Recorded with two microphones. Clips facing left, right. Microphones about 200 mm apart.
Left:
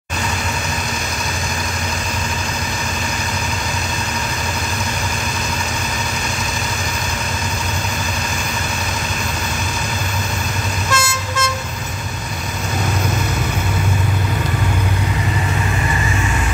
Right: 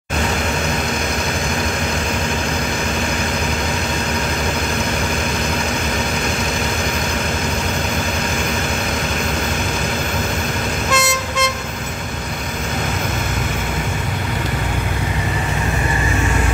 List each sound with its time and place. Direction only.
10.9 s vehicle: centre (ahead or behind)